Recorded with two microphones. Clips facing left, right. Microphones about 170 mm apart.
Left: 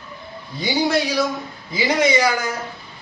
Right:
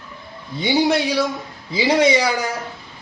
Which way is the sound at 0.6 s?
25° right (ahead or behind).